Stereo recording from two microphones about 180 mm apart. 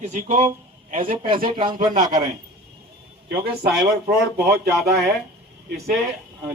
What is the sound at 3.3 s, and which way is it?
Speech, 60° right (ahead or behind).